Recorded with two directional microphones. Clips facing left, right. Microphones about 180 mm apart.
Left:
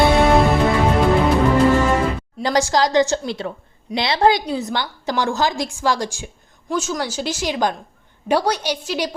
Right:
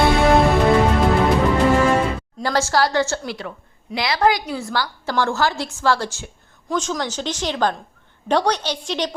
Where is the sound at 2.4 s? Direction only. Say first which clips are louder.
Left 2 dB; 15° left (ahead or behind).